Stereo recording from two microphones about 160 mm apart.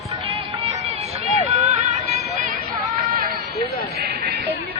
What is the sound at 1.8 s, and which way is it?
Music, 45° right (ahead or behind).